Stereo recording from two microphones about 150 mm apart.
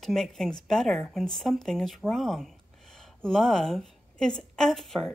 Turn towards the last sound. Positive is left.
turn(degrees=0)  # may be behind; listen again after turning